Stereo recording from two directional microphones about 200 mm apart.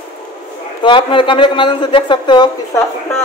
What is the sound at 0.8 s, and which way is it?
A woman's voice, 25° left (ahead or behind).